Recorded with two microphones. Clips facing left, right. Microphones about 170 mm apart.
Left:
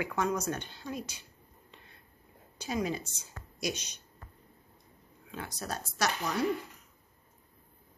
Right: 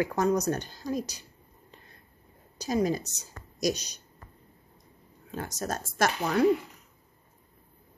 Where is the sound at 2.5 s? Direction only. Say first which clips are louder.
Right 6 dB; 40° right (ahead or behind).